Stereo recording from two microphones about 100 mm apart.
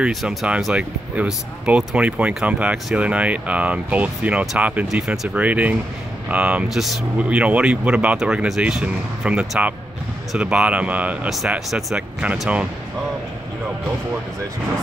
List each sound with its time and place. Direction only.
0.0 s speech: centre (ahead or behind)
5.4 s speech: 15° right (ahead or behind)
6.7 s speech: centre (ahead or behind)
7.2 s speech: 15° right (ahead or behind)
11.2 s speech: 5° right (ahead or behind)